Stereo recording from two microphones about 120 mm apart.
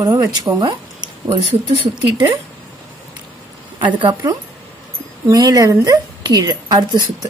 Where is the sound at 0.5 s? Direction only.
30° right (ahead or behind).